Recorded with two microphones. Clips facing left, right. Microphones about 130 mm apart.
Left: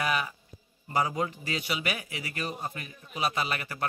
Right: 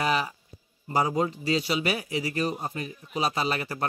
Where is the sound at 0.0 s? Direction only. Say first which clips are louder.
Right 3 dB; 30° right (ahead or behind).